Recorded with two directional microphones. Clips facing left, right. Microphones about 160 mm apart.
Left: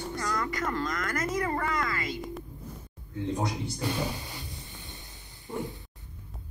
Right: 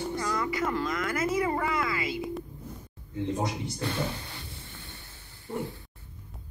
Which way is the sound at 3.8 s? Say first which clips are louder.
Even; 15° left (ahead or behind).